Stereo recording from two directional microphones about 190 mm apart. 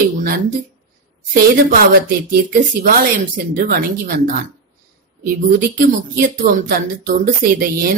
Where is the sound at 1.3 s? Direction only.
50° right (ahead or behind).